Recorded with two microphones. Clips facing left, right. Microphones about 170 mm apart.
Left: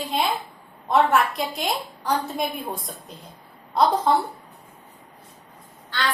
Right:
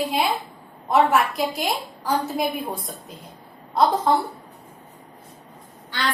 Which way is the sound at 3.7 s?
Centre (ahead or behind).